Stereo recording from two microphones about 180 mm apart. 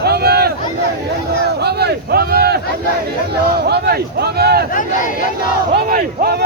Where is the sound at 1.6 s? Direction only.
65° right (ahead or behind).